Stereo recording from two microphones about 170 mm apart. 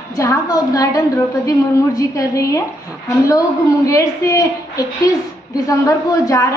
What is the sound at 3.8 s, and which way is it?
A woman's voice, 20° left (ahead or behind).